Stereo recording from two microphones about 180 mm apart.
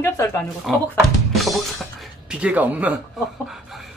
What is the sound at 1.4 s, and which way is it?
Music, centre (ahead or behind).